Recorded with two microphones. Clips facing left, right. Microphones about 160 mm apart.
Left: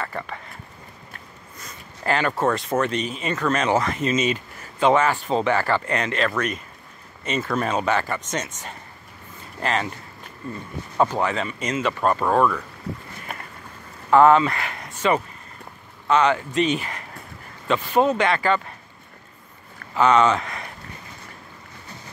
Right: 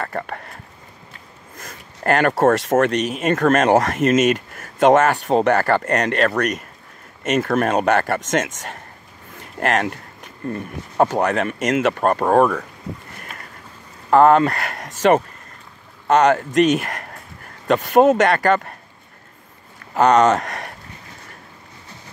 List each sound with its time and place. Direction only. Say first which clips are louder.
0.0 s a sound: right 4 dB; 55° right (ahead or behind)
1.6 s a sound: right 5 dB; 50° right (ahead or behind)
2.5 s speech: right 6 dB; 80° right
3.2 s speech: right 8 dB; 50° right (ahead or behind); by 5.5 s 70° right (ahead or behind)
5.5 s speech: right 5 dB; 50° right (ahead or behind)
7.2 s speech: right 6 dB; 70° right (ahead or behind); by 8.7 s 90° right
9.4 s speech: right 5 dB; 65° right (ahead or behind); by 12.6 s 45° right (ahead or behind)
14.1 s speech: right 2 dB; 40° right (ahead or behind)
14.9 s speech: right 6 dB; 90° right
16.1 s speech: right 4 dB; 45° right (ahead or behind)
16.8 s a sound: right 4 dB; 75° right (ahead or behind)
17.9 s speech: right 6 dB; 45° right (ahead or behind)
18.3 s speech: right 4 dB; 60° right (ahead or behind)
19.9 s speech: right 3 dB; 45° right (ahead or behind)